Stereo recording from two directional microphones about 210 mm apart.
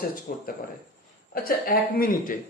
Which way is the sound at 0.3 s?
40° left (ahead or behind).